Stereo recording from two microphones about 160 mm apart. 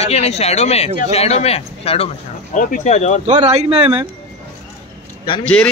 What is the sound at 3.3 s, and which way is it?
Speech, 45° right (ahead or behind).